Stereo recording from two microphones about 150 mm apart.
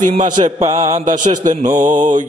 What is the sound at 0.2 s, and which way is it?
Mantra, 55° right (ahead or behind).